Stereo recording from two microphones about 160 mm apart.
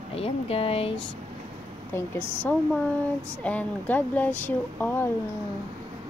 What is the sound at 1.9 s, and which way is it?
Speech, 15° left (ahead or behind).